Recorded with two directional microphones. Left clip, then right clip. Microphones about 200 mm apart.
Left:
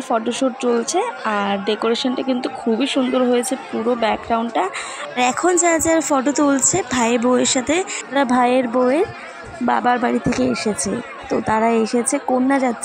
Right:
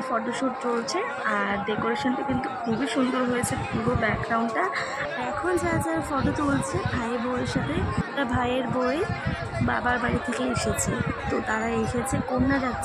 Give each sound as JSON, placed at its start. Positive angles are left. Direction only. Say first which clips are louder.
{"t": 0.1, "sound": "speech", "louder": "left 9 dB", "side_deg": 20}
{"t": 2.8, "sound": "speech", "louder": "left 7 dB", "side_deg": 20}